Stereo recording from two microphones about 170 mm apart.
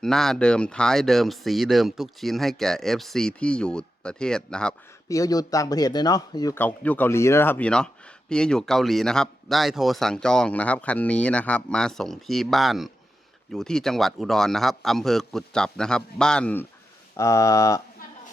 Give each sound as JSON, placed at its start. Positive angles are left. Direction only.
{"t": 0.0, "sound": "speech", "side_deg": 5}
{"t": 5.0, "sound": "speech", "side_deg": 20}
{"t": 6.6, "sound": "speech", "side_deg": 10}
{"t": 17.2, "sound": "speech", "side_deg": 20}